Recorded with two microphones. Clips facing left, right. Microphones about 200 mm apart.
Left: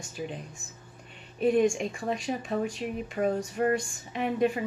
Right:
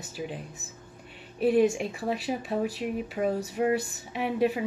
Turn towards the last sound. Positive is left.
turn(degrees=-5)  # may be behind; listen again after turning